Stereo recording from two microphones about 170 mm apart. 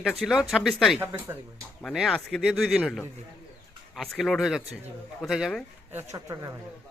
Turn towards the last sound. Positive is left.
turn(degrees=-20)  # may be behind; listen again after turning